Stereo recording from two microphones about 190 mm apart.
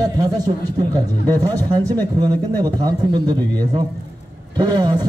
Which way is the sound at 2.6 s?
20° right (ahead or behind).